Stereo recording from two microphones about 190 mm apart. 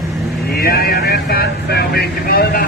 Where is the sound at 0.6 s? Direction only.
55° left (ahead or behind).